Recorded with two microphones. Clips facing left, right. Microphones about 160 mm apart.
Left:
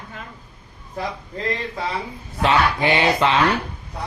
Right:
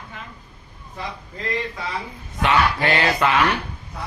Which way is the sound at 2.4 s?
25° left (ahead or behind).